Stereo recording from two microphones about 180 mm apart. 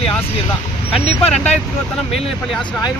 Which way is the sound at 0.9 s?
35° left (ahead or behind).